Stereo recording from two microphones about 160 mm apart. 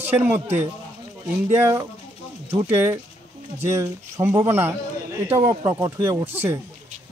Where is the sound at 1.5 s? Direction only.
15° right (ahead or behind).